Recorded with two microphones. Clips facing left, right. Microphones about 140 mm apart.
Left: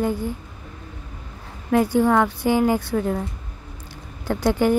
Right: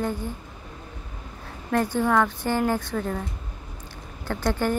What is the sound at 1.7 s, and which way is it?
Speech, 10° left (ahead or behind).